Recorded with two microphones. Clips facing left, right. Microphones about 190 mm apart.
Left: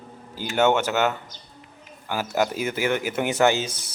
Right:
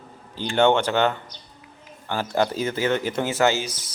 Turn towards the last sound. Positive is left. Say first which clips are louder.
# left 1 dB
turn(degrees=20)  # may be behind; listen again after turning